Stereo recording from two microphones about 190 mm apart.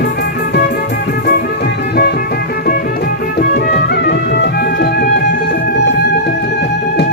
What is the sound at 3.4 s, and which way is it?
Music, 60° left (ahead or behind).